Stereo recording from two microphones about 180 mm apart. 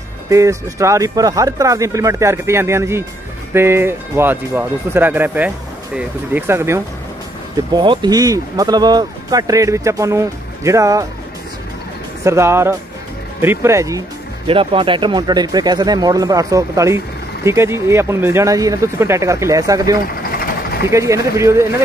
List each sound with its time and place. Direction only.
0.3 s speech: 15° right (ahead or behind)
7.7 s speech: 25° right (ahead or behind)
12.3 s speech: 15° right (ahead or behind)
14.5 s speech: 30° right (ahead or behind)